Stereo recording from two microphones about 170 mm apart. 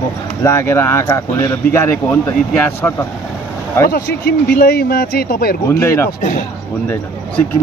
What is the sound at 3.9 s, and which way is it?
Speech, 70° left (ahead or behind).